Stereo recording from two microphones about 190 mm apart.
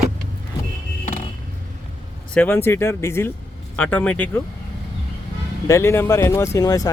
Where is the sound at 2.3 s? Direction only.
10° left (ahead or behind).